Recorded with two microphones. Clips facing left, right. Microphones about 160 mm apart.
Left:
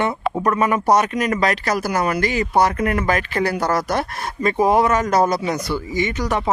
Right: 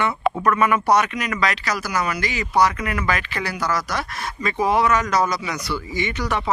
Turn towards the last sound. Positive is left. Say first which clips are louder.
# left 3 dB
turn(degrees=40)  # may be behind; listen again after turning